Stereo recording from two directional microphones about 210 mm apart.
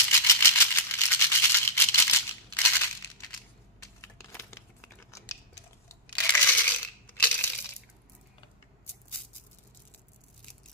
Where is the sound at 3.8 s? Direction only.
15° left (ahead or behind).